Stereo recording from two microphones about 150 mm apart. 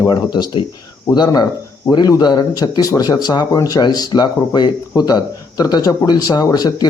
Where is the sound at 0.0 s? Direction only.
30° left (ahead or behind).